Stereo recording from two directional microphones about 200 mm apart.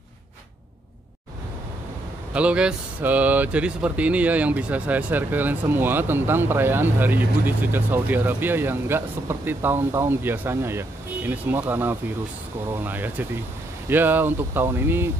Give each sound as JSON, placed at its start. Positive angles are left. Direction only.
{"t": 2.3, "sound": "speech", "side_deg": -5}